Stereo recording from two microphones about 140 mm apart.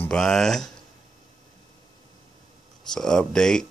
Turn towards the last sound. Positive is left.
turn(degrees=5)  # may be behind; listen again after turning